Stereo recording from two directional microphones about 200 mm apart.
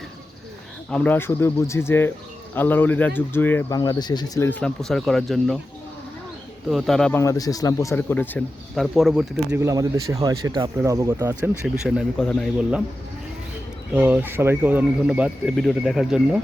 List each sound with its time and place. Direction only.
0.9 s speech: 5° left (ahead or behind)
4.4 s speech: 5° left (ahead or behind)
6.7 s speech: centre (ahead or behind)
7.2 s speech: 15° left (ahead or behind); by 9.6 s centre (ahead or behind)
9.6 s speech: 15° right (ahead or behind); by 12.8 s centre (ahead or behind)
13.9 s speech: 5° right (ahead or behind)